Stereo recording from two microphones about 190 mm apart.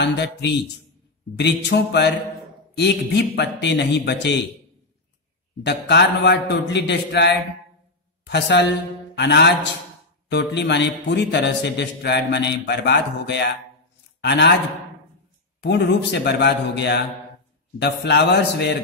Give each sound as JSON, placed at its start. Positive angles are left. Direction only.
{"t": 0.0, "sound": "a man's voice", "side_deg": 65}
{"t": 5.6, "sound": "a man's voice", "side_deg": 65}
{"t": 15.6, "sound": "a man's voice", "side_deg": 65}